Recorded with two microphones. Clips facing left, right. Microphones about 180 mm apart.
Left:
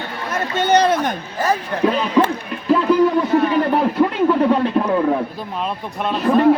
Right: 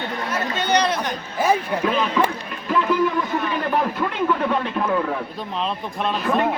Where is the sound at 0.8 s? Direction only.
50° left (ahead or behind).